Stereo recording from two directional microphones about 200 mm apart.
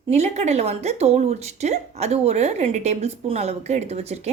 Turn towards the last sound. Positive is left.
turn(degrees=-30)  # may be behind; listen again after turning